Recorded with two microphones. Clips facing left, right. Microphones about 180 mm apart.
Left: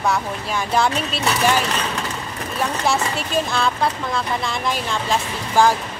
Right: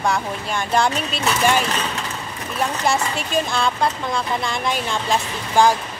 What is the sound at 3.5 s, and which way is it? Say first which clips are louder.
Speech: even; centre (ahead or behind).